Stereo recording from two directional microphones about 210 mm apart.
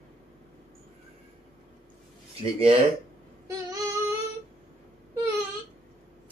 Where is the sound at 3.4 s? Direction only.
15° right (ahead or behind).